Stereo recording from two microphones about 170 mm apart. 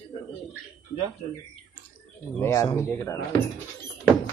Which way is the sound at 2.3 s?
15° left (ahead or behind).